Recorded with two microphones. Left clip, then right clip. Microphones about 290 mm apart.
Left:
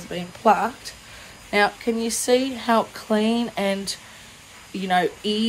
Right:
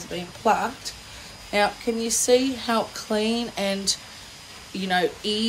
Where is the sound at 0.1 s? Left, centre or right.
Left.